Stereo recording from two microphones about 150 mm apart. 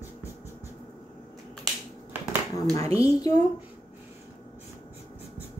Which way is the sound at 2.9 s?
25° left (ahead or behind).